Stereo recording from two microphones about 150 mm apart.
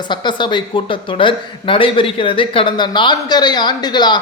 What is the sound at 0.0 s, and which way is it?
Speech, 30° left (ahead or behind).